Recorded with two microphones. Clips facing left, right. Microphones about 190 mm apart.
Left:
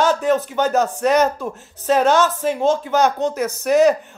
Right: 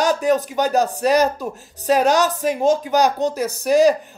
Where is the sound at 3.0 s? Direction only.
35° right (ahead or behind).